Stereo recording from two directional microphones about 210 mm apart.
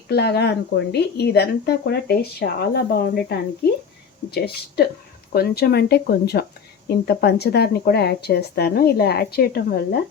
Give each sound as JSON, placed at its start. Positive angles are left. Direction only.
{"t": 0.1, "sound": "speech", "side_deg": 50}